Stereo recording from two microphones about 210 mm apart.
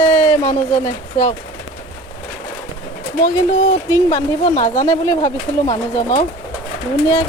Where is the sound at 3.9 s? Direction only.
15° left (ahead or behind).